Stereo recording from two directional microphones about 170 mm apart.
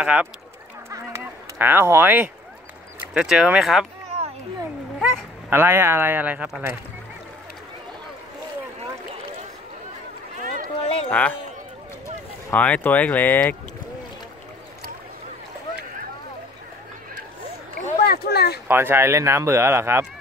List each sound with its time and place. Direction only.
0.0 s speech: 5° right (ahead or behind)
0.8 s a sound: 15° right (ahead or behind)
3.2 s speech: 5° right (ahead or behind)
5.1 s speech: 15° right (ahead or behind)
10.4 s run: 50° right (ahead or behind)
11.1 s speech: 10° left (ahead or behind)
12.4 s speech: 10° left (ahead or behind)
17.8 s boat: 60° left (ahead or behind)
18.7 s speech: 15° right (ahead or behind)